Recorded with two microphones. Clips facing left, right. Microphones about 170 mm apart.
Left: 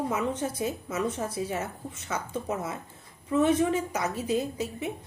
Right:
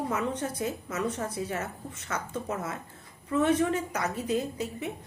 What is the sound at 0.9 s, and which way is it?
A woman's voice, 10° left (ahead or behind).